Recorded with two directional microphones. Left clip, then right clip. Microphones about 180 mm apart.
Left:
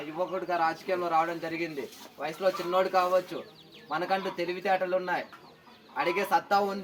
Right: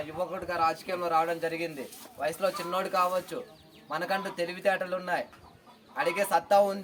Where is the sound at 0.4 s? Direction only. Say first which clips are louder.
Right 1 dB; 35° right (ahead or behind).